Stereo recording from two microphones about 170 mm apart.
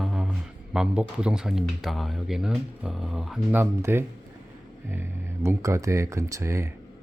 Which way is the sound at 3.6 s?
15° right (ahead or behind).